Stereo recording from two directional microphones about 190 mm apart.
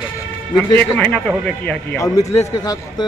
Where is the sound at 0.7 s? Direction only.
5° left (ahead or behind).